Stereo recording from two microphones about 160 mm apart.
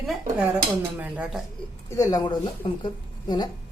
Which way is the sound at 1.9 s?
20° left (ahead or behind).